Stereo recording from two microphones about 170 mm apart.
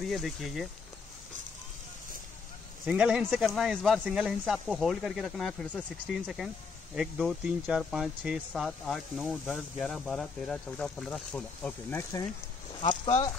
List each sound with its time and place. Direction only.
0.0 s speech: centre (ahead or behind)
2.8 s speech: 5° right (ahead or behind)
12.0 s speech: 20° left (ahead or behind)
13.0 s speech: 35° left (ahead or behind)